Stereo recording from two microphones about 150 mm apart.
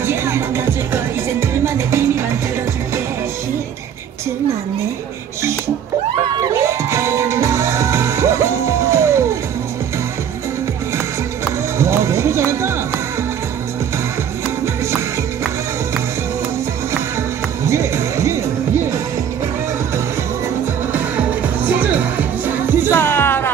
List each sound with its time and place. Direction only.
0.0 s music: 15° right (ahead or behind)
6.6 s music: 20° right (ahead or behind)
11.8 s run: 20° right (ahead or behind)
17.6 s music: 20° right (ahead or behind)
21.6 s music: 10° right (ahead or behind)
22.9 s music: 15° left (ahead or behind)